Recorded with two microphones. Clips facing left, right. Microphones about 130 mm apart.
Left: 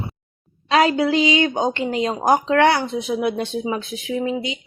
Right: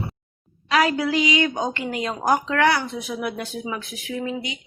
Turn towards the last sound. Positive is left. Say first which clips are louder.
# left 5 dB
turn(degrees=25)  # may be behind; listen again after turning